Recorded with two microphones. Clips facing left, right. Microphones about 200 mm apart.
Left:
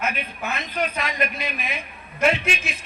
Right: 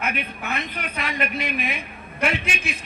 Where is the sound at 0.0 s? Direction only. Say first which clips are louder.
Left 1 dB; 60° right (ahead or behind).